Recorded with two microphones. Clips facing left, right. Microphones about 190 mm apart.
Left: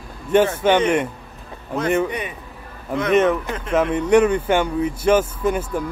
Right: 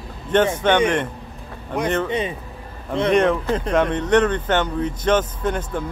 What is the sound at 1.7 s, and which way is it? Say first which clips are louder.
Speech: even; 10° left (ahead or behind).